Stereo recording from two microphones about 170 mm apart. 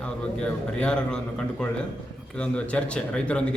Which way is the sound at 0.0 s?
5° left (ahead or behind).